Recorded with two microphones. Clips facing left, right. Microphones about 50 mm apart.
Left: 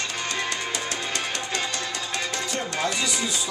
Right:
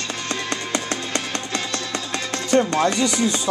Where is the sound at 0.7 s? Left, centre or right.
Right.